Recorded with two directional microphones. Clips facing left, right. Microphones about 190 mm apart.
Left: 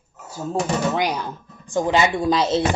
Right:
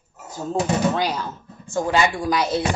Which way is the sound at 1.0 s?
15° left (ahead or behind).